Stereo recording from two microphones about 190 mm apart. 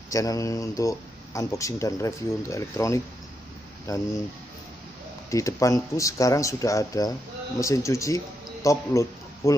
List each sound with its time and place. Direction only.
0.1 s speech: 15° left (ahead or behind)
5.3 s a man's voice: 15° left (ahead or behind)